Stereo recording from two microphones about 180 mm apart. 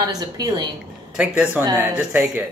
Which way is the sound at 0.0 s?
20° right (ahead or behind).